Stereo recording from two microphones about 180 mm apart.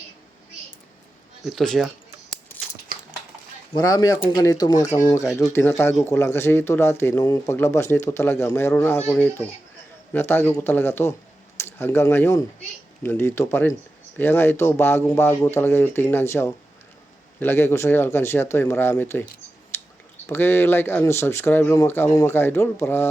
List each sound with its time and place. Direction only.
1.5 s speech: centre (ahead or behind)
3.8 s a man's voice: 20° left (ahead or behind)
19.7 s clicking: 15° left (ahead or behind)
20.2 s a man's voice: 15° left (ahead or behind)